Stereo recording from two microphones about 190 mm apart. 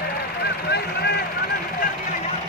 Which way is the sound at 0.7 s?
60° left (ahead or behind).